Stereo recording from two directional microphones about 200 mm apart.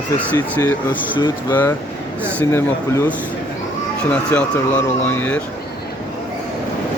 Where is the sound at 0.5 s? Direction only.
10° left (ahead or behind).